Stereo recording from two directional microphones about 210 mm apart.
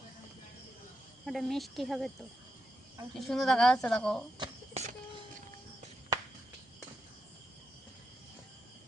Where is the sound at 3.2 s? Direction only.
Centre (ahead or behind).